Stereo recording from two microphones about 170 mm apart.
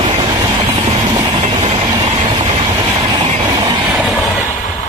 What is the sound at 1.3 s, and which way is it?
Train, 40° right (ahead or behind).